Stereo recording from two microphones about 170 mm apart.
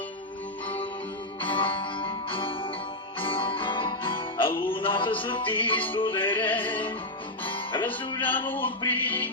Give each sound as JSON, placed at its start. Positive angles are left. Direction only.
{"t": 1.5, "sound": "music", "side_deg": 30}
{"t": 5.5, "sound": "music", "side_deg": 10}
{"t": 5.9, "sound": "music", "side_deg": 30}
{"t": 6.1, "sound": "music", "side_deg": 10}
{"t": 7.4, "sound": "music", "side_deg": 30}
{"t": 8.2, "sound": "music", "side_deg": 10}